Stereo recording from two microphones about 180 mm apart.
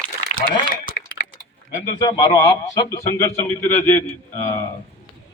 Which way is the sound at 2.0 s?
20° left (ahead or behind).